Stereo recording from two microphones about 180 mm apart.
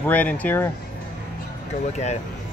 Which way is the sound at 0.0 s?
10° left (ahead or behind).